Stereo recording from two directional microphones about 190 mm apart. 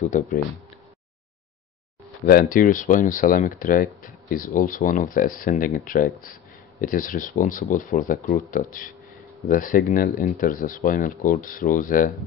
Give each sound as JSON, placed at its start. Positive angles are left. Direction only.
{"t": 0.0, "sound": "speech", "side_deg": 40}
{"t": 2.2, "sound": "speech", "side_deg": 50}